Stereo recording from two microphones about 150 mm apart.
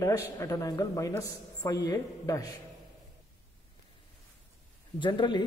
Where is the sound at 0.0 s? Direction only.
20° left (ahead or behind).